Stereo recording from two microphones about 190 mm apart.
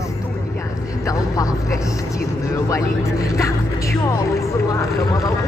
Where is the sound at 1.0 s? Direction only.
15° left (ahead or behind).